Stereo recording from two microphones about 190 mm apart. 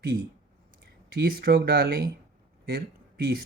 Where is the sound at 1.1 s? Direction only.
55° right (ahead or behind).